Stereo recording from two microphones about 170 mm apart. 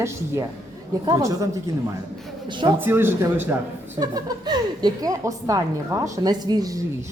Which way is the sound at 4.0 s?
25° right (ahead or behind).